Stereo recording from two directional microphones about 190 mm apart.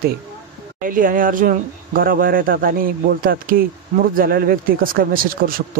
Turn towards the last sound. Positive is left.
turn(degrees=-50)  # may be behind; listen again after turning